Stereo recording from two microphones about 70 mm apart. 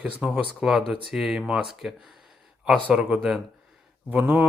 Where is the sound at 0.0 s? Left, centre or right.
Centre.